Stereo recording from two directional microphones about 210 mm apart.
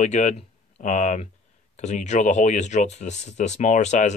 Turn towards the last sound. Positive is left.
turn(degrees=35)  # may be behind; listen again after turning